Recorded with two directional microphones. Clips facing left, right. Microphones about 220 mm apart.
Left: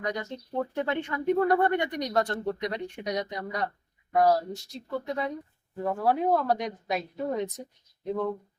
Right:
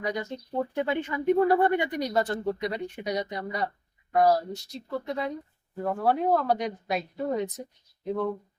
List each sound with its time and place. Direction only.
0.0 s speech: 5° right (ahead or behind)